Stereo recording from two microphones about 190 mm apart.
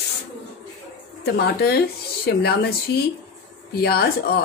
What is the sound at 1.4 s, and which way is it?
Speech, 60° left (ahead or behind).